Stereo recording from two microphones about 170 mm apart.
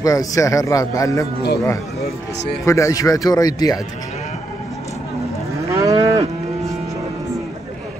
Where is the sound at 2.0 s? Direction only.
70° left (ahead or behind).